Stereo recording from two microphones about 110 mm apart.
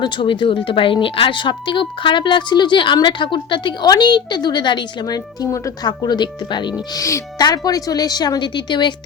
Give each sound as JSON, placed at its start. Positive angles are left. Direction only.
{"t": 0.0, "sound": "speech", "side_deg": 50}
{"t": 6.0, "sound": "speech", "side_deg": 40}
{"t": 6.9, "sound": "a woman's voice", "side_deg": 30}